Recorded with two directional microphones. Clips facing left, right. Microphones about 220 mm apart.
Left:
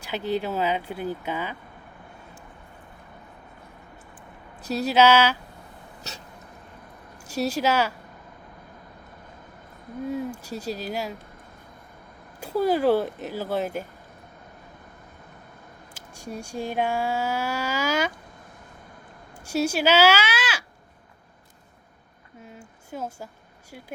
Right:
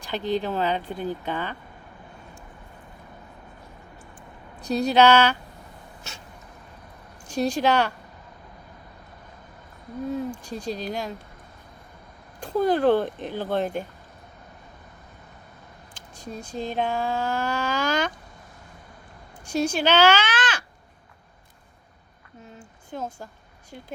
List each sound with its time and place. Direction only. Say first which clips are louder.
0.0 s speech: right 1 dB; 5° left (ahead or behind)
4.6 s speech: right 1 dB; 5° left (ahead or behind)
6.0 s a sound: left 4 dB; 40° left (ahead or behind)
7.3 s speech: right 2 dB; 5° left (ahead or behind)
10.4 s speech: right 1 dB; 5° left (ahead or behind)
12.4 s speech: right 1 dB; 5° left (ahead or behind)
16.0 s speech: left 1 dB; 10° left (ahead or behind)
19.5 s speech: even; 5° left (ahead or behind)
22.4 s a sound: even; 10° left (ahead or behind)